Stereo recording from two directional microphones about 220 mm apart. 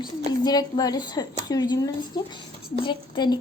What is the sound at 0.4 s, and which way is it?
A woman's voice, 15° left (ahead or behind).